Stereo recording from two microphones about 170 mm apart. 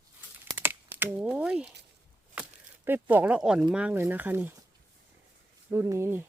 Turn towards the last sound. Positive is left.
turn(degrees=-15)  # may be behind; listen again after turning